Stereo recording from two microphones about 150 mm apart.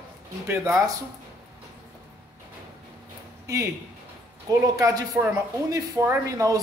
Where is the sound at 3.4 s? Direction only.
20° right (ahead or behind).